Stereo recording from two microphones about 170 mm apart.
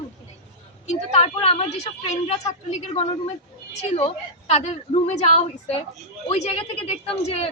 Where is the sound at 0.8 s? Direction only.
40° left (ahead or behind).